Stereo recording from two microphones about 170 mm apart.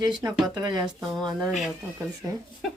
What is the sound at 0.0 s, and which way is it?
Speech, 25° right (ahead or behind).